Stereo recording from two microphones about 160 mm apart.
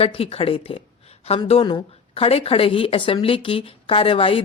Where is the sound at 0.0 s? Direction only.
35° left (ahead or behind).